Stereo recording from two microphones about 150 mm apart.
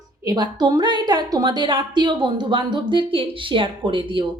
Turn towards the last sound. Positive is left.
turn(degrees=-35)  # may be behind; listen again after turning